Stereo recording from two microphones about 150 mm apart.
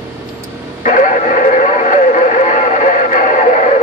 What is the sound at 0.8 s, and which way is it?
Radio, 60° left (ahead or behind).